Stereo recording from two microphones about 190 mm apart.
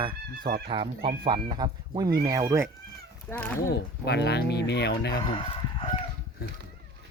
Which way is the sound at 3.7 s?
60° left (ahead or behind).